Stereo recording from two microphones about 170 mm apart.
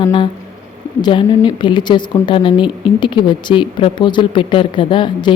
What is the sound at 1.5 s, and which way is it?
A woman's voice, 25° left (ahead or behind).